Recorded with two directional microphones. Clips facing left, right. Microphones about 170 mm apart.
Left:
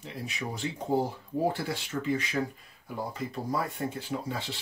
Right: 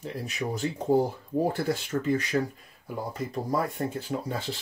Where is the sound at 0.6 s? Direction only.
45° right (ahead or behind).